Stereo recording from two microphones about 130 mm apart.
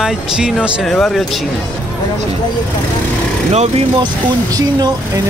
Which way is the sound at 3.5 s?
55° right (ahead or behind).